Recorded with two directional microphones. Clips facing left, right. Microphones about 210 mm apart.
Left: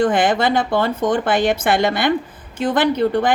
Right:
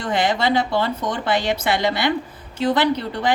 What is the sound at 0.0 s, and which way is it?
Speech, 50° left (ahead or behind).